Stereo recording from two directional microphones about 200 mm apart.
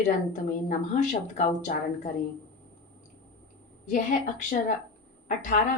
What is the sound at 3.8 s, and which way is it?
A woman's voice, 40° left (ahead or behind).